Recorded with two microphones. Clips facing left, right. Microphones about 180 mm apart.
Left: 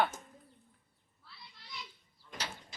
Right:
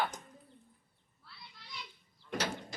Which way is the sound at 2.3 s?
65° right (ahead or behind).